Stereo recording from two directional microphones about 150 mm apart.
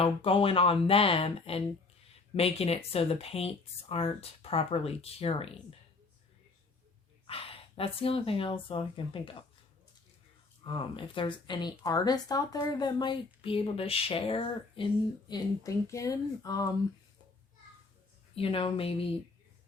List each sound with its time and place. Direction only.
0.0 s speech: 35° left (ahead or behind)
7.3 s speech: 40° left (ahead or behind)
10.6 s speech: 35° left (ahead or behind)
15.3 s speech: 20° left (ahead or behind)
18.3 s speech: 40° left (ahead or behind)